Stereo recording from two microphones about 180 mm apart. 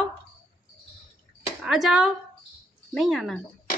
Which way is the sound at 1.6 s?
Centre (ahead or behind).